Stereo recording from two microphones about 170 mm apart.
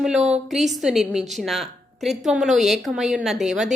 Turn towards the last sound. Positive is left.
turn(degrees=-5)  # may be behind; listen again after turning